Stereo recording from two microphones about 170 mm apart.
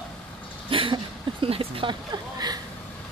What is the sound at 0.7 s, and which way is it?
Speech, 30° right (ahead or behind).